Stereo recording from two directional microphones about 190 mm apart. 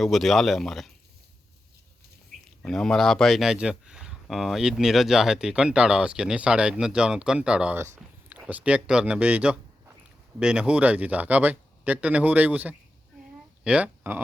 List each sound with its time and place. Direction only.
0.0 s speech: centre (ahead or behind)
2.6 s speech: centre (ahead or behind)